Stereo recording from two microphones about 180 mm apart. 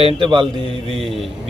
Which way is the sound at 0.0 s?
30° right (ahead or behind).